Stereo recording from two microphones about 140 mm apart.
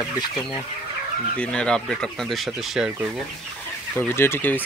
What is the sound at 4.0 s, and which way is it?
Speech, 15° left (ahead or behind).